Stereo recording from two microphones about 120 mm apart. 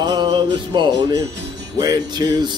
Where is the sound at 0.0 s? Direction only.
35° right (ahead or behind).